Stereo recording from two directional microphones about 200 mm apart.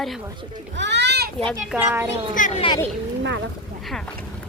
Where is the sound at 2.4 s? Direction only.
40° left (ahead or behind).